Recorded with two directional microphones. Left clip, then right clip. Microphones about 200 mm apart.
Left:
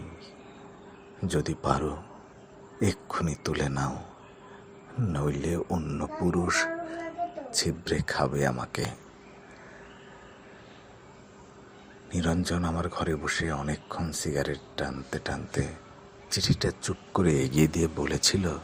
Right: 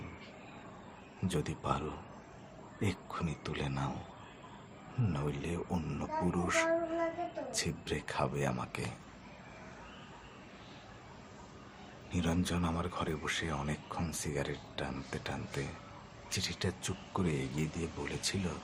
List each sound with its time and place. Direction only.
1.3 s speech: 25° left (ahead or behind)
5.1 s speech: 30° left (ahead or behind)
12.1 s speech: 25° left (ahead or behind)